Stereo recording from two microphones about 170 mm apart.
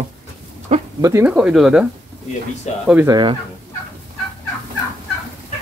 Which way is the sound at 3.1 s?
25° right (ahead or behind).